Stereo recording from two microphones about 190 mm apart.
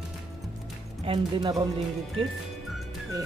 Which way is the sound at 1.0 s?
25° right (ahead or behind).